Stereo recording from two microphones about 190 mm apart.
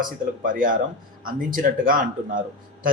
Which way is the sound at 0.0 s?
50° right (ahead or behind).